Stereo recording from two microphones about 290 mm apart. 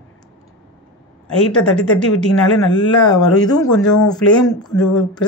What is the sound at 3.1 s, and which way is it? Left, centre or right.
Speech, centre.